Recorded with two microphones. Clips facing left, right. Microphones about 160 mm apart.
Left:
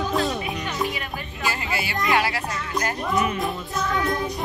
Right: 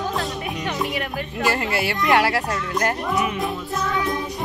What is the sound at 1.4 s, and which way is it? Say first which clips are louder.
Speech: right 5 dB; 70° right (ahead or behind).